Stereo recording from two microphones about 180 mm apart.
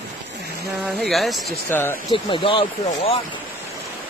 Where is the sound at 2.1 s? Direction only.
30° left (ahead or behind).